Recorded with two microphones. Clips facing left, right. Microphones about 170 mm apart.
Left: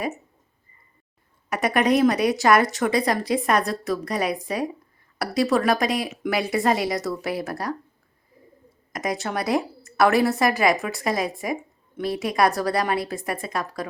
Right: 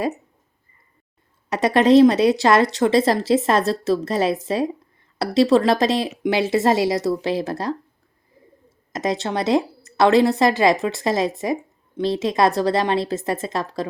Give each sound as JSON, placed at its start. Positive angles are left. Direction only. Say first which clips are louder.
{"t": 1.5, "sound": "a woman's voice", "louder": "right 5 dB", "side_deg": -25}
{"t": 8.9, "sound": "a woman's voice", "louder": "right 4 dB", "side_deg": -25}